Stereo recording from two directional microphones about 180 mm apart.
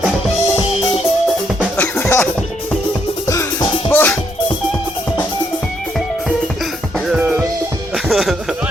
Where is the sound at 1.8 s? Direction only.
10° left (ahead or behind).